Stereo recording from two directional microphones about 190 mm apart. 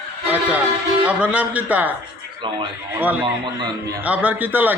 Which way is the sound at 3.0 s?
10° right (ahead or behind).